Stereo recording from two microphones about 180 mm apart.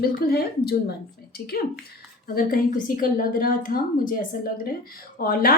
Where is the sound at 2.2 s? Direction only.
55° left (ahead or behind).